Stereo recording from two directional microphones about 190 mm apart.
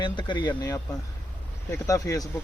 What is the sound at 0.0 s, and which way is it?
Speech, 25° left (ahead or behind).